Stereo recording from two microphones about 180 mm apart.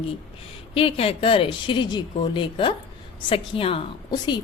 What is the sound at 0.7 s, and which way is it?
Speech, 30° left (ahead or behind).